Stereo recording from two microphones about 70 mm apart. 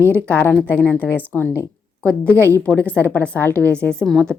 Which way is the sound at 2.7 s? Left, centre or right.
Centre.